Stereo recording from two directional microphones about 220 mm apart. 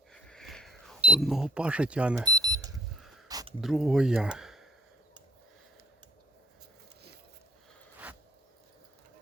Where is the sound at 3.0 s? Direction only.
Centre (ahead or behind).